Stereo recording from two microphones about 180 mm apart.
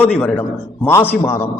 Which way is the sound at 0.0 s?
10° left (ahead or behind).